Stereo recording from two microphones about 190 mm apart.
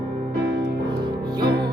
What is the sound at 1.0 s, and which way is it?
Music, 20° right (ahead or behind).